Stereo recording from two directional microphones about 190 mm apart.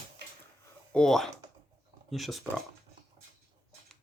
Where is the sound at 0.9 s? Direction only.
5° left (ahead or behind).